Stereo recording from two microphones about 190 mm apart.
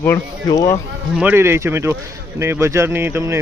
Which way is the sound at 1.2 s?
10° right (ahead or behind).